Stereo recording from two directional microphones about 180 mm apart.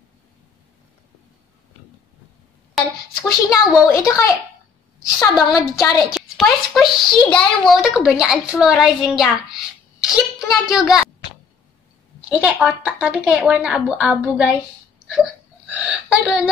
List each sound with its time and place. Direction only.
3.2 s a woman's voice: 20° left (ahead or behind)
5.2 s a woman's voice: 20° left (ahead or behind)
6.1 s a child's voice: centre (ahead or behind)
12.3 s a child's voice: 5° right (ahead or behind)
15.7 s gasp: 5° right (ahead or behind)